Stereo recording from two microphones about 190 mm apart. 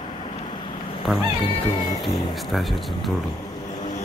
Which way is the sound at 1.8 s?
20° left (ahead or behind).